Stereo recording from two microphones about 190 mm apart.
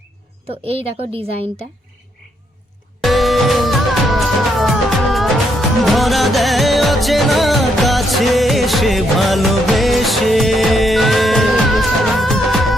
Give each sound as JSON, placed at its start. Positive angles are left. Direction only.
{"t": 0.4, "sound": "a woman's voice", "side_deg": -30}
{"t": 3.0, "sound": "music", "side_deg": 0}